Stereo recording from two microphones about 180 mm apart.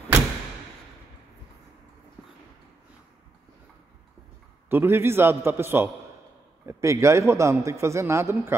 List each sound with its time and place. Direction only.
4.6 s a man's voice: 10° right (ahead or behind)